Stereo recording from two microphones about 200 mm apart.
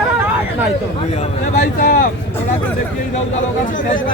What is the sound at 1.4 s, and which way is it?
Speech, 40° left (ahead or behind).